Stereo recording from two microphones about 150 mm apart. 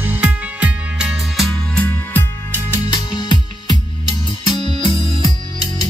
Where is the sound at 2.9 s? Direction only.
30° left (ahead or behind).